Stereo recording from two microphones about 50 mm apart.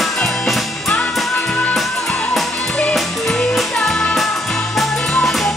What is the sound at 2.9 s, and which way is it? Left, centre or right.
Music, centre.